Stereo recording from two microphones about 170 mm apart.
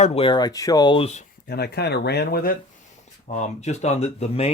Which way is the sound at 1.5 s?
70° left (ahead or behind).